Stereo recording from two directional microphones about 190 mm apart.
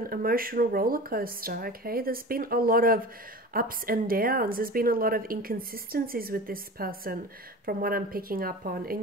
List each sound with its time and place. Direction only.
0.0 s a woman's voice: 50° right (ahead or behind)